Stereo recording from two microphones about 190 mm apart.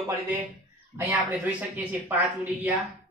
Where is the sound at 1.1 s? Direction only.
10° right (ahead or behind).